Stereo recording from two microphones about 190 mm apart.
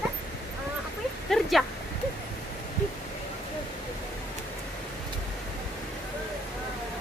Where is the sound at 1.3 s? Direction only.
Centre (ahead or behind).